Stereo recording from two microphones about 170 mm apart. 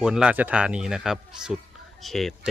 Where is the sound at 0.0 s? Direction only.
5° right (ahead or behind).